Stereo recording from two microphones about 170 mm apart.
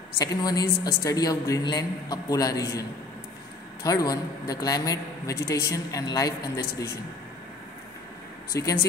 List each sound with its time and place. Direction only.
0.2 s a woman's voice: 20° left (ahead or behind)
3.8 s a woman's voice: 20° left (ahead or behind)
8.5 s a woman's voice: 20° left (ahead or behind)